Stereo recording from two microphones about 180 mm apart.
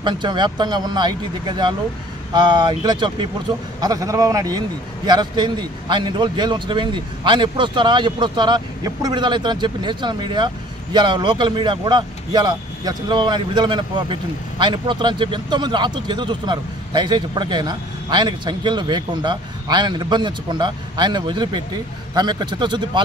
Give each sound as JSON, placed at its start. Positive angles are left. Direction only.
{"t": 0.0, "sound": "a man's voice", "side_deg": -25}